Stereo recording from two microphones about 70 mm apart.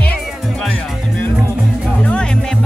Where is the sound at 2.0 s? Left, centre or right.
Centre.